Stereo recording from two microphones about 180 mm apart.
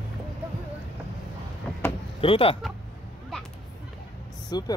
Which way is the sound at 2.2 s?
30° left (ahead or behind).